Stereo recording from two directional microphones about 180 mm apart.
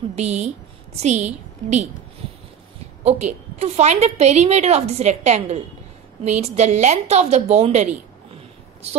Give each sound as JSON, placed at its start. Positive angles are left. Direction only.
{"t": 0.1, "sound": "a woman's voice", "side_deg": -40}
{"t": 3.0, "sound": "a woman's voice", "side_deg": -40}